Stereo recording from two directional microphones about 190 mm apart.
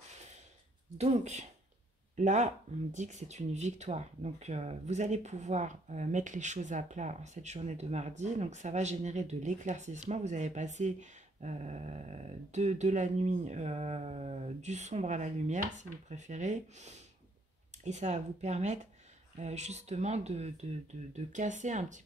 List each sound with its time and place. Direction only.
0.9 s speech: 35° right (ahead or behind)